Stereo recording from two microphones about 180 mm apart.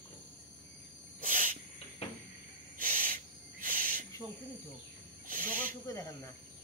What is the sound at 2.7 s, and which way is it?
Owl, 50° right (ahead or behind).